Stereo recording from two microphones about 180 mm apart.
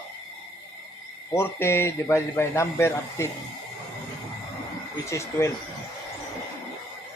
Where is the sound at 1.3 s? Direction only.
15° left (ahead or behind).